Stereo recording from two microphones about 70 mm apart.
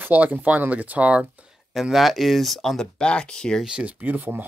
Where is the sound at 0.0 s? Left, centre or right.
Right.